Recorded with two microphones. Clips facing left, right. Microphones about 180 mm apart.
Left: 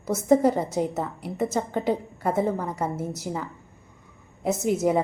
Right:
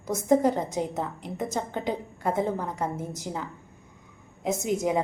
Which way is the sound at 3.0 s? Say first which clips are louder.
Left 3 dB; 40° left (ahead or behind).